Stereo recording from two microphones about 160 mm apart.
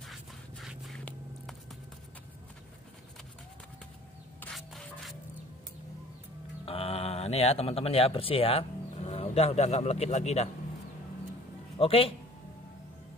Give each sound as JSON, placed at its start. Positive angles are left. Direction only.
{"t": 0.0, "sound": "scrape", "side_deg": 0}
{"t": 4.4, "sound": "rub", "side_deg": 5}
{"t": 6.6, "sound": "speech", "side_deg": 35}
{"t": 11.8, "sound": "a man's voice", "side_deg": 35}